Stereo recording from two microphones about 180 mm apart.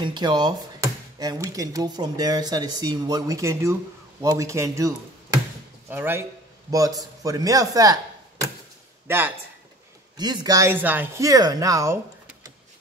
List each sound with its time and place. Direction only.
0.0 s a man's voice: 25° right (ahead or behind)
10.1 s speech: 20° right (ahead or behind)